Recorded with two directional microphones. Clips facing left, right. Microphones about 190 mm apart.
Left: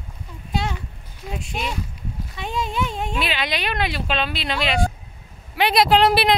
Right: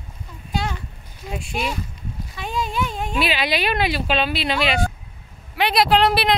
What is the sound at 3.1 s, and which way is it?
Speech, 5° right (ahead or behind).